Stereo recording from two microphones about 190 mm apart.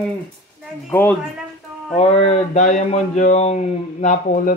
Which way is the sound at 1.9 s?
35° left (ahead or behind).